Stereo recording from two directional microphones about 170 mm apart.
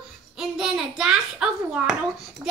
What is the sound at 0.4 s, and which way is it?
A child's voice, centre (ahead or behind).